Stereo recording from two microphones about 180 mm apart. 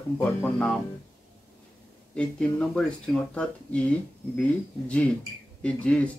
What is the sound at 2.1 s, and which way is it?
Speech, 5° left (ahead or behind).